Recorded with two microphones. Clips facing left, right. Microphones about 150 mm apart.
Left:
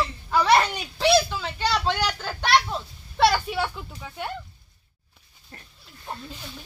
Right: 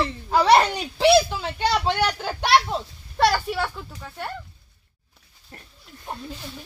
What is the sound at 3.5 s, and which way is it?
Speech, 5° left (ahead or behind).